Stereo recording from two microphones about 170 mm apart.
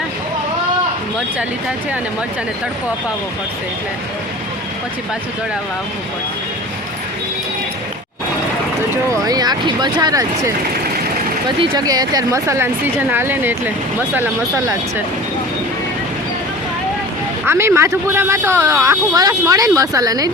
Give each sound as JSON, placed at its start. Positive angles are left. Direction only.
{"t": 9.2, "sound": "a woman's voice", "side_deg": -25}
{"t": 17.4, "sound": "a woman's voice", "side_deg": -15}